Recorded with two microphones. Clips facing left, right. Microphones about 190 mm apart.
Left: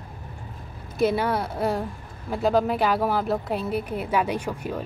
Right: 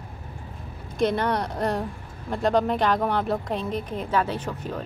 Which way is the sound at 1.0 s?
5° left (ahead or behind).